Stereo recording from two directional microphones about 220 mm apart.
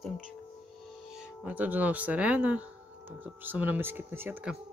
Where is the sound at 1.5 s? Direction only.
5° right (ahead or behind).